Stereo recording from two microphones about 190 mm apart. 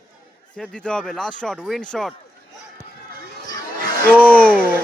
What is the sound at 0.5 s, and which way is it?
Speech, 5° left (ahead or behind).